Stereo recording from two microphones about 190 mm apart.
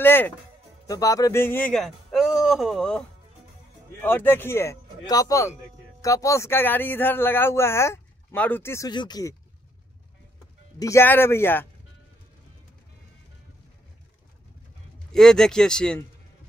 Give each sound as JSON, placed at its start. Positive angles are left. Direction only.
{"t": 0.0, "sound": "a man's voice", "side_deg": 10}
{"t": 4.0, "sound": "speech", "side_deg": 10}
{"t": 10.8, "sound": "speech", "side_deg": 15}
{"t": 15.1, "sound": "speech", "side_deg": 0}